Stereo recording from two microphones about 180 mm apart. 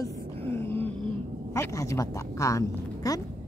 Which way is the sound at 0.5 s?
10° left (ahead or behind).